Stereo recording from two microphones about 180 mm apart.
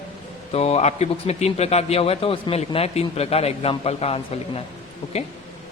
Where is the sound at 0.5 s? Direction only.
35° left (ahead or behind).